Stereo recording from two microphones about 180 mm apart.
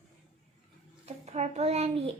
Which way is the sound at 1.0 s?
40° right (ahead or behind).